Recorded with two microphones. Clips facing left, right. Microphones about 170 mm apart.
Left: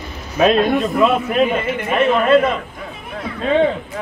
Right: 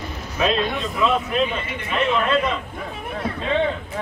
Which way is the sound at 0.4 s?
55° left (ahead or behind).